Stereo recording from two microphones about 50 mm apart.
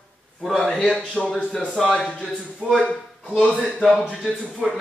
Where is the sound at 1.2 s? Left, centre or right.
Left.